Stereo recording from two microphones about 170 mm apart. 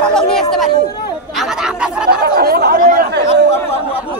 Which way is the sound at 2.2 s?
65° right (ahead or behind).